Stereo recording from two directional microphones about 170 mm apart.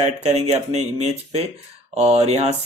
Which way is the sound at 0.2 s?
40° right (ahead or behind).